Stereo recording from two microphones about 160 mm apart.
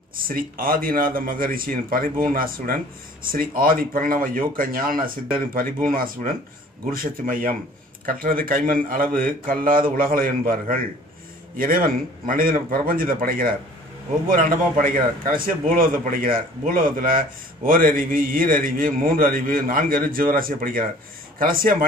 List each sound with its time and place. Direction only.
0.3 s a man's voice: 65° right (ahead or behind)